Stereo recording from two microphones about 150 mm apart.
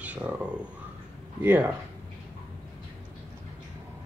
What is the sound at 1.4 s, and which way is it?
Speech, 15° right (ahead or behind).